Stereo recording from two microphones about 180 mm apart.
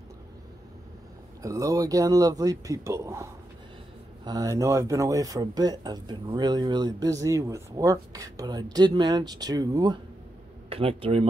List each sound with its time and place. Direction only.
1.4 s speech: 20° right (ahead or behind)
10.7 s speech: 30° right (ahead or behind)